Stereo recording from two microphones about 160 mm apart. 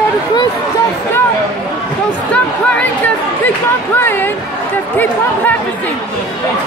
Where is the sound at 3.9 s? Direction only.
10° left (ahead or behind).